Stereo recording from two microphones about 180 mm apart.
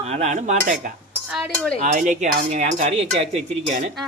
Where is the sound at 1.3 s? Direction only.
Centre (ahead or behind).